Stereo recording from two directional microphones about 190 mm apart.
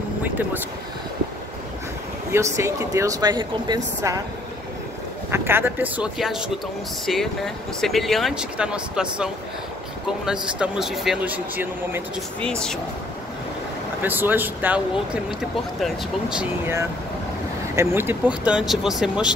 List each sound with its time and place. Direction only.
2.3 s speech: 15° right (ahead or behind)
5.3 s speech: 10° right (ahead or behind)
12.4 s speech: 5° left (ahead or behind)
14.0 s speech: 10° right (ahead or behind)
15.8 s speech: 5° right (ahead or behind)